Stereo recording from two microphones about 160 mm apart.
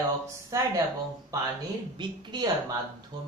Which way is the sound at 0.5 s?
20° right (ahead or behind).